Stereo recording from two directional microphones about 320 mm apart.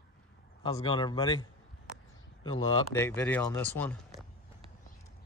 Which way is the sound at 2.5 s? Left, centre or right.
Centre.